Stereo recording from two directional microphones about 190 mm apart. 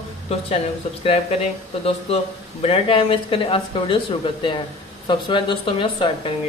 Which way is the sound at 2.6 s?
30° left (ahead or behind).